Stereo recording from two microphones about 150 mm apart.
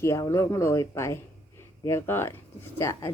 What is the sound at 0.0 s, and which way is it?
Speech, 20° left (ahead or behind).